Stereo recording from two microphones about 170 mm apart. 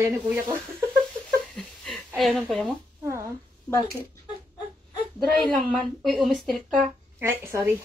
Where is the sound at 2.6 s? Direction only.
15° right (ahead or behind).